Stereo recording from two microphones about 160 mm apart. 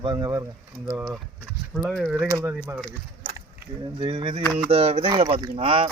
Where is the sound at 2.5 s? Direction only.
10° right (ahead or behind).